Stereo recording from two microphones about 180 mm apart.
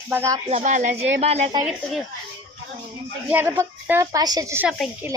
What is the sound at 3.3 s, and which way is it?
A woman's voice, 10° right (ahead or behind).